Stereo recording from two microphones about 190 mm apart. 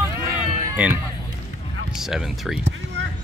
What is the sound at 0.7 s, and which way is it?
Speech, 5° right (ahead or behind).